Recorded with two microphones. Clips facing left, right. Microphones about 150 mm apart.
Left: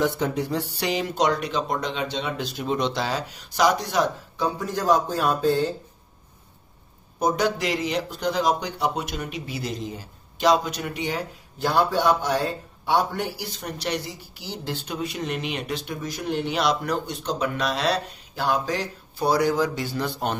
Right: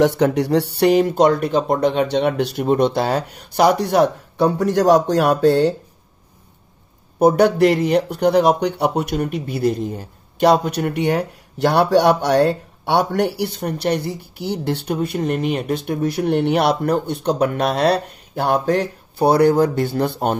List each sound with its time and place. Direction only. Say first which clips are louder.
0.0 s a man's voice: right 8 dB; 75° right (ahead or behind)
7.2 s a man's voice: right 10 dB; 60° right (ahead or behind)